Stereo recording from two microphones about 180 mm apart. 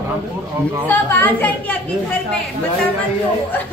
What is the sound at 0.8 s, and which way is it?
Speech, 10° left (ahead or behind).